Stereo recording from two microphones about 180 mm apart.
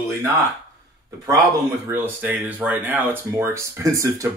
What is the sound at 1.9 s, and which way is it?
Speech, 10° right (ahead or behind).